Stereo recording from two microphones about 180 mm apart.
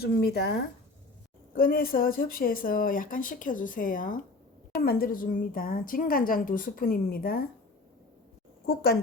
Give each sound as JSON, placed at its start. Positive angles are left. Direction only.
{"t": 0.0, "sound": "speech", "side_deg": 60}
{"t": 1.5, "sound": "a woman's voice", "side_deg": 55}
{"t": 8.6, "sound": "speech", "side_deg": 60}